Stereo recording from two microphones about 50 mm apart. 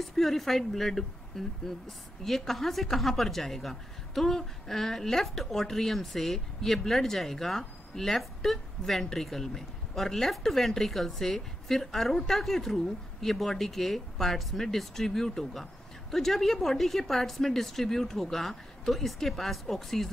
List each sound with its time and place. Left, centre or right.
0.0 s a woman's voice: centre